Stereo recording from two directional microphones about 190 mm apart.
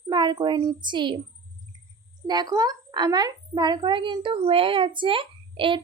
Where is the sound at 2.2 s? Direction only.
20° right (ahead or behind).